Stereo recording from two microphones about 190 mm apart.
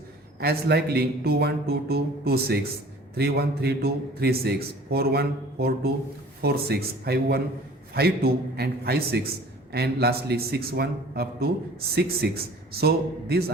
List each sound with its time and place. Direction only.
0.3 s a man's voice: 55° right (ahead or behind)